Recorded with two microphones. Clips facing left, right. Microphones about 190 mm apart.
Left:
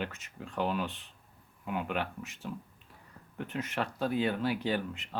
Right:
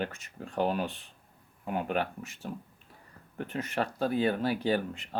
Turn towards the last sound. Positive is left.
turn(degrees=-40)  # may be behind; listen again after turning